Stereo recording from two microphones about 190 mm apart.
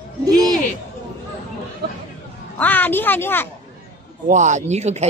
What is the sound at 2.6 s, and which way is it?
Speech, 10° left (ahead or behind).